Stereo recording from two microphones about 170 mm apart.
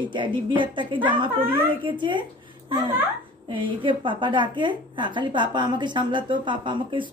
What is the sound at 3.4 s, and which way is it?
A woman's voice, 30° right (ahead or behind).